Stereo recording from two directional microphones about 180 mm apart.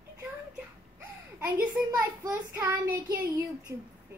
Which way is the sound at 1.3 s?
10° right (ahead or behind).